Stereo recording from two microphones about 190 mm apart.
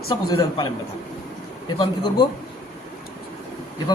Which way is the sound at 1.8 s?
20° left (ahead or behind).